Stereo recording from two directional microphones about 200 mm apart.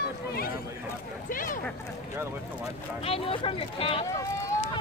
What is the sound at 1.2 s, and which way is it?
Speech, 45° left (ahead or behind).